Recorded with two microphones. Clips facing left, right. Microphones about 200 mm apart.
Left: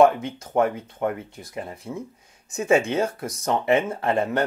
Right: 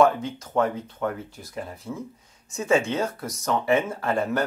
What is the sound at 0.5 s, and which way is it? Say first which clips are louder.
Speech: left 2 dB; 15° left (ahead or behind).